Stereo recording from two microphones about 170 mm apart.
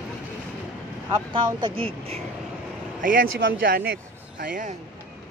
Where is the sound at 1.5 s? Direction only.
30° right (ahead or behind).